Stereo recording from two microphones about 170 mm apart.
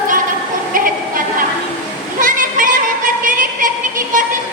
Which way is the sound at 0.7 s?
55° right (ahead or behind).